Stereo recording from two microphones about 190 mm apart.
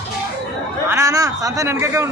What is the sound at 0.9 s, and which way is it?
A man's voice, 15° right (ahead or behind).